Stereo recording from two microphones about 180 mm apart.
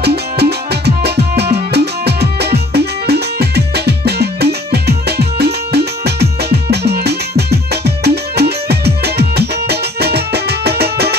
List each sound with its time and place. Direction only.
0.0 s music: 65° right (ahead or behind)